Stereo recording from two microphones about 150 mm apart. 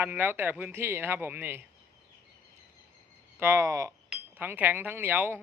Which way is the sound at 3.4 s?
20° right (ahead or behind).